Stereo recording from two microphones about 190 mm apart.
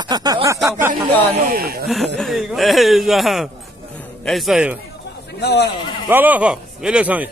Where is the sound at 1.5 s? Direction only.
50° right (ahead or behind).